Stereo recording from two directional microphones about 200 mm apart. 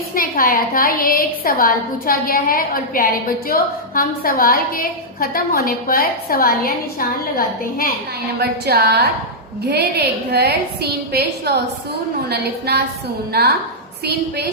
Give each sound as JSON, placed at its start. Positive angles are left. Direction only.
{"t": 0.1, "sound": "a woman's voice", "side_deg": 45}
{"t": 8.4, "sound": "a woman's voice", "side_deg": -55}